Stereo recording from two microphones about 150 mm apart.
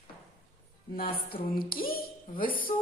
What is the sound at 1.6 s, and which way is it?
Speech, 80° left.